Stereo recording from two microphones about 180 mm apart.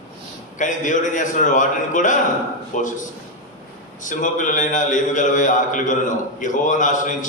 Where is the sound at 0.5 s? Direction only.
45° left (ahead or behind).